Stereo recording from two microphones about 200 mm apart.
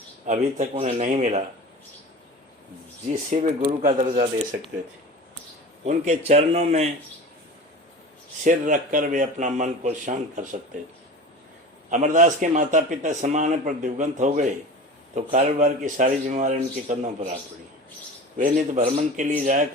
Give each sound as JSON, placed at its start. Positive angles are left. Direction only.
{"t": 0.3, "sound": "a man's voice", "side_deg": -35}
{"t": 3.2, "sound": "a man's voice", "side_deg": -40}
{"t": 5.8, "sound": "a man's voice", "side_deg": -35}
{"t": 8.4, "sound": "a man's voice", "side_deg": -40}
{"t": 11.9, "sound": "a man's voice", "side_deg": -40}
{"t": 18.3, "sound": "a man's voice", "side_deg": -40}